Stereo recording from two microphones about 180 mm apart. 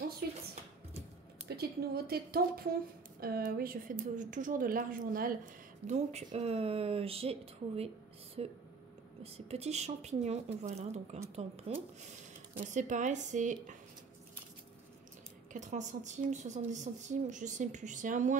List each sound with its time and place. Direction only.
1.6 s speech: 60° right (ahead or behind)
5.9 s speech: 40° right (ahead or behind)
15.5 s speech: 40° right (ahead or behind)